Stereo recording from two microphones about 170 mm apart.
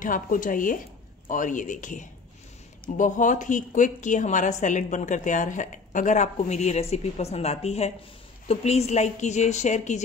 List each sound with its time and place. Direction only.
0.0 s a woman's voice: 50° left (ahead or behind)